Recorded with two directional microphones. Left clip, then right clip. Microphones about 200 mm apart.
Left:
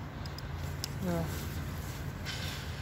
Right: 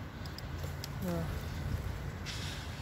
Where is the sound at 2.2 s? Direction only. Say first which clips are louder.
Left 3 dB; centre (ahead or behind).